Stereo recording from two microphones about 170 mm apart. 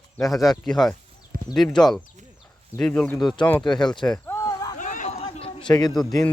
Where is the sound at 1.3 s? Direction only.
55° right (ahead or behind).